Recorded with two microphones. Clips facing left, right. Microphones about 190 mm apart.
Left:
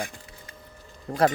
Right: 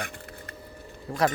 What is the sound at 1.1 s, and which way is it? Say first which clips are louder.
Speech: left 3 dB; 45° left (ahead or behind).